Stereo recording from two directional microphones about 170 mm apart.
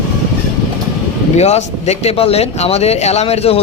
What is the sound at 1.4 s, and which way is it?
A man's voice, 40° left (ahead or behind).